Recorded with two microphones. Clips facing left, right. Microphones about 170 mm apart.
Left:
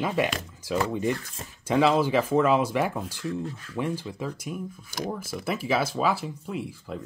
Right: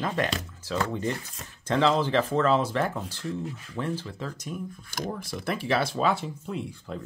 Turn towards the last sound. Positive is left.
turn(degrees=5)  # may be behind; listen again after turning